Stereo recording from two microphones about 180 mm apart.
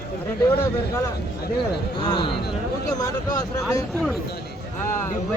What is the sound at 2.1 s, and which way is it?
Speech, 25° left (ahead or behind).